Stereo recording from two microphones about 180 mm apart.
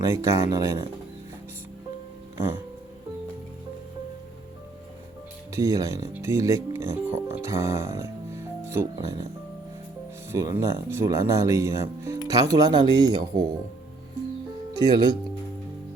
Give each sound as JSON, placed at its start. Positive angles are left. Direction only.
{"t": 0.0, "sound": "speech", "side_deg": -20}
{"t": 5.5, "sound": "speech", "side_deg": -15}
{"t": 10.3, "sound": "speech", "side_deg": -15}
{"t": 14.7, "sound": "speech", "side_deg": -20}